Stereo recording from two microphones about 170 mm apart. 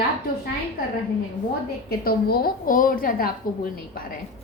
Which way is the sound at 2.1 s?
65° left (ahead or behind).